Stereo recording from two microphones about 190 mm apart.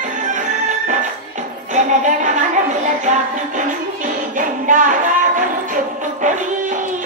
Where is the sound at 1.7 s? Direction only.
40° right (ahead or behind).